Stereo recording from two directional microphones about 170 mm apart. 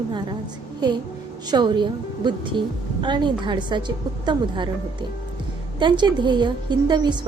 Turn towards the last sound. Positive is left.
turn(degrees=-25)  # may be behind; listen again after turning